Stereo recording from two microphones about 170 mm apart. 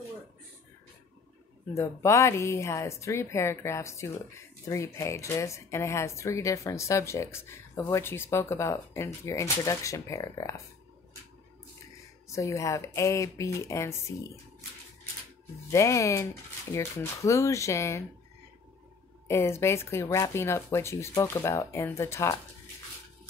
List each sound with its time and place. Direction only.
1.7 s speech: 15° left (ahead or behind)
12.3 s speech: 15° left (ahead or behind)
15.7 s speech: 20° left (ahead or behind)
19.2 s speech: 15° left (ahead or behind)